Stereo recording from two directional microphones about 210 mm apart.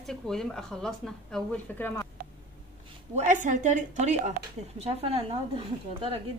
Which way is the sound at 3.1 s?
35° right (ahead or behind).